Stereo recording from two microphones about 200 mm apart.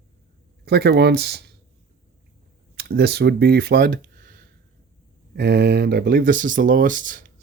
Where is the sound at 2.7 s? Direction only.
55° right (ahead or behind).